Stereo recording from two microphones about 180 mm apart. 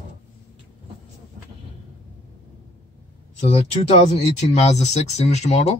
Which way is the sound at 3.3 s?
35° left (ahead or behind).